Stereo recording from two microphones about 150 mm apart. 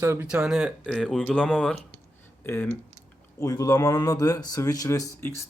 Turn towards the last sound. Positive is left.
turn(degrees=20)  # may be behind; listen again after turning